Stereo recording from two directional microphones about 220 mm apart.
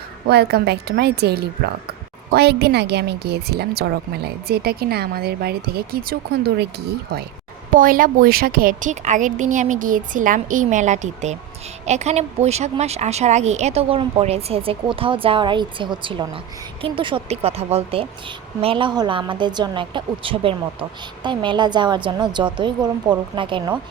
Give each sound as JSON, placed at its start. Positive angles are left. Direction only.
{"t": 0.3, "sound": "a woman's voice", "side_deg": -50}